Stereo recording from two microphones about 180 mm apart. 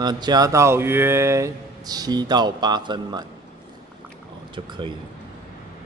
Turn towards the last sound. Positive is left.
turn(degrees=-25)  # may be behind; listen again after turning